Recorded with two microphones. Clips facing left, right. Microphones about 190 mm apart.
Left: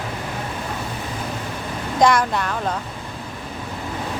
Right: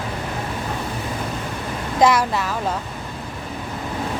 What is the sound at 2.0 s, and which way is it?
Speech, 5° right (ahead or behind).